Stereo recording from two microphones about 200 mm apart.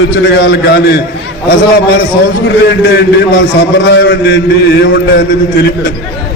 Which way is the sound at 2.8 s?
60° left (ahead or behind).